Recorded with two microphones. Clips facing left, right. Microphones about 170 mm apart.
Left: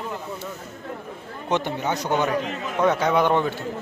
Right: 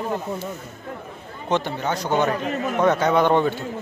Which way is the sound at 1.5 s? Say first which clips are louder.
Right 1 dB; 15° left (ahead or behind).